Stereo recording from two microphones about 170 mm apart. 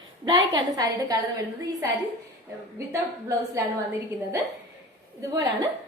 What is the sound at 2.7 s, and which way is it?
Speech, 15° right (ahead or behind).